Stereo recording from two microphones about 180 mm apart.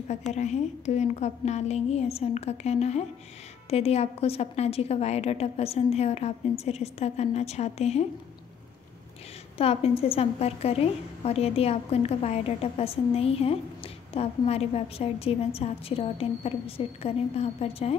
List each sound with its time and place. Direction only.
0.3 s a woman's voice: 40° left (ahead or behind)
9.6 s a woman's voice: 30° left (ahead or behind)